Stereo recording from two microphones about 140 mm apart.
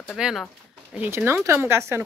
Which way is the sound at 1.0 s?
15° right (ahead or behind).